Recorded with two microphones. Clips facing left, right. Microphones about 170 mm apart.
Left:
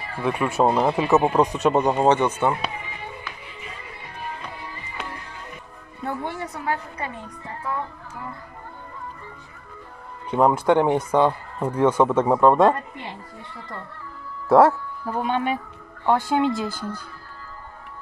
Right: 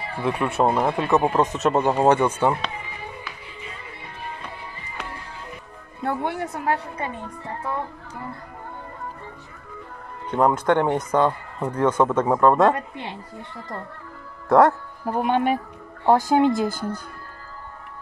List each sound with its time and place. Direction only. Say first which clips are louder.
0.2 s speech: left 1 dB; centre (ahead or behind)
6.0 s a woman's voice: right 3 dB; 60° right (ahead or behind)
10.3 s speech: left 1 dB; 5° left (ahead or behind)
14.5 s speech: left 1 dB; 5° left (ahead or behind)
15.0 s speech: right 3 dB; 45° right (ahead or behind)